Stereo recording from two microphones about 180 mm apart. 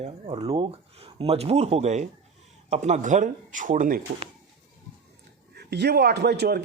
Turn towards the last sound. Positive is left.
turn(degrees=-65)  # may be behind; listen again after turning